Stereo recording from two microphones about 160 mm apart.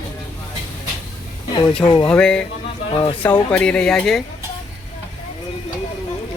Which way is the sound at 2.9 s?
30° left (ahead or behind).